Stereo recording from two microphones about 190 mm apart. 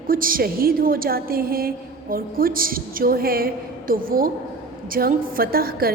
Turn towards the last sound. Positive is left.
turn(degrees=-50)  # may be behind; listen again after turning